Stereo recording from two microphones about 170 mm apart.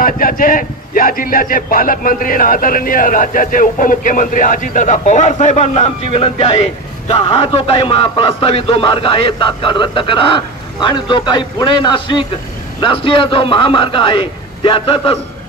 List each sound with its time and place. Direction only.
0.0 s a man's voice: 55° left (ahead or behind); by 15.1 s 30° left (ahead or behind)